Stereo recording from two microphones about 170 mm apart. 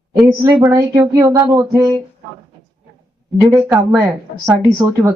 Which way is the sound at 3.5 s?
10° right (ahead or behind).